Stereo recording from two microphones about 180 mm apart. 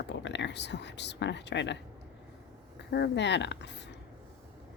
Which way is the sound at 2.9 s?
70° left (ahead or behind).